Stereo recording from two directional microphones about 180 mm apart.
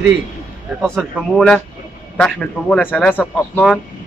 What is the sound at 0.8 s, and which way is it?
Speech, 5° left (ahead or behind).